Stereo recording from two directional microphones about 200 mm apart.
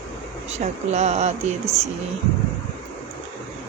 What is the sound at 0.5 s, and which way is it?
Speech, 35° right (ahead or behind).